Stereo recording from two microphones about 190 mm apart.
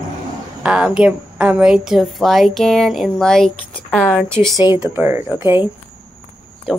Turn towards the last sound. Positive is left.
turn(degrees=-15)  # may be behind; listen again after turning